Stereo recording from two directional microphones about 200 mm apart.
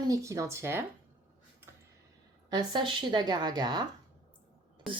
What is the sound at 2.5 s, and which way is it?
Speech, 25° right (ahead or behind).